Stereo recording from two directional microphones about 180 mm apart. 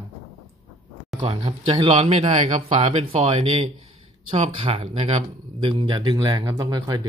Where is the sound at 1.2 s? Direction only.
25° right (ahead or behind).